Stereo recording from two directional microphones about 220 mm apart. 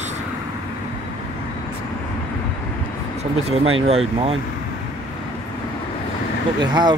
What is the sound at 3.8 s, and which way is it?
Speech, 25° right (ahead or behind).